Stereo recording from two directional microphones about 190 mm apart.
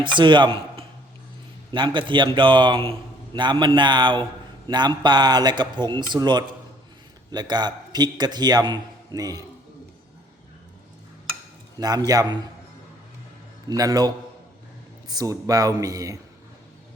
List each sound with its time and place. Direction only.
0.0 s a man's voice: 25° right (ahead or behind)
11.8 s speech: 20° right (ahead or behind)
13.7 s speech: 20° right (ahead or behind)
15.1 s speech: 20° right (ahead or behind)